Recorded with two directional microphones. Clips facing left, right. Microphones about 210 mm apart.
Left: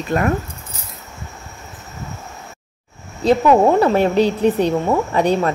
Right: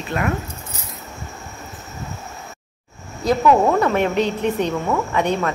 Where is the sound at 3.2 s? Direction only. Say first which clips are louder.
Left 3 dB; 30° left (ahead or behind).